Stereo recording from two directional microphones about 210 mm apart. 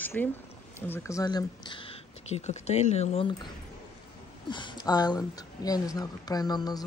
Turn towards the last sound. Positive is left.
turn(degrees=20)  # may be behind; listen again after turning